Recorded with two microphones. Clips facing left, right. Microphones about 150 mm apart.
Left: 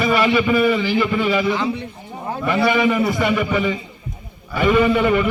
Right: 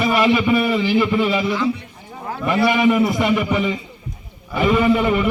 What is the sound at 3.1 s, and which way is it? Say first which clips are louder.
Speech: right 1 dB; 15° right (ahead or behind).